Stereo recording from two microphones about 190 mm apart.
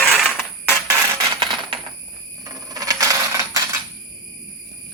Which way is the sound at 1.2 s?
25° right (ahead or behind).